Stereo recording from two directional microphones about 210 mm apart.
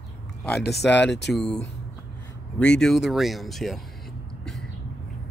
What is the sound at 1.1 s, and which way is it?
Speech, 55° left (ahead or behind).